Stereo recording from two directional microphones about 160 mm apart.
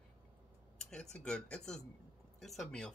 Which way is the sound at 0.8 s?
5° left (ahead or behind).